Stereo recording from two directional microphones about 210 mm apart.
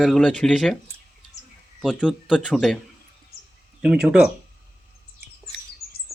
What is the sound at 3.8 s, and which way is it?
Speech, 5° right (ahead or behind).